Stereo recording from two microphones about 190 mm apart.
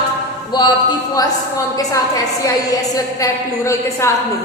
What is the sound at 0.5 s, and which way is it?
A man's voice, 25° left (ahead or behind).